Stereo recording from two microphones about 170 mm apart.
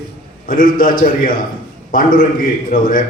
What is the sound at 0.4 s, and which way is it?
A man's voice, 55° left (ahead or behind).